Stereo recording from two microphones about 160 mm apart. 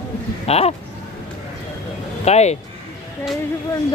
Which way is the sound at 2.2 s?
45° left (ahead or behind).